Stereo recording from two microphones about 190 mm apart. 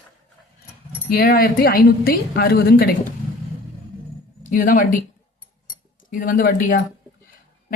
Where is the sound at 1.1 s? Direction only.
50° left (ahead or behind).